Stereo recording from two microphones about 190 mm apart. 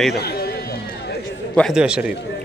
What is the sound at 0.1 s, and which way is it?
Speech, 55° left (ahead or behind).